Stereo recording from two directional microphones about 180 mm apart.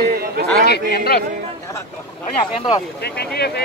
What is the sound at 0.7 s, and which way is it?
Speech, 60° left (ahead or behind).